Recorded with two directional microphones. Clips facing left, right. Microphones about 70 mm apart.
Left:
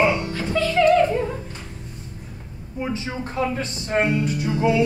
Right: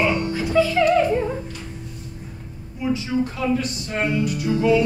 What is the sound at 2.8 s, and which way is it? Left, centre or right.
Speech, left.